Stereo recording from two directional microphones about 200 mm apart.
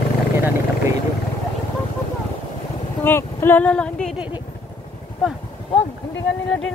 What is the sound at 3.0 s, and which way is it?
Vehicle, 10° left (ahead or behind).